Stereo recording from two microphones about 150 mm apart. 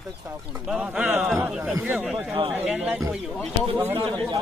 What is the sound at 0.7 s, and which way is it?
A man's voice, 5° right (ahead or behind).